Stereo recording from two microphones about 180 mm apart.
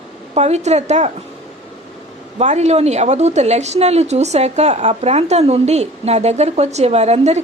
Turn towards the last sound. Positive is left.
turn(degrees=-35)  # may be behind; listen again after turning